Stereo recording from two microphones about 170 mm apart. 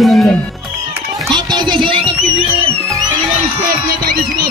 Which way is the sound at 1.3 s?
25° right (ahead or behind).